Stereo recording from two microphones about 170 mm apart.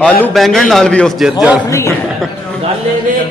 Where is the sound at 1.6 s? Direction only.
15° left (ahead or behind).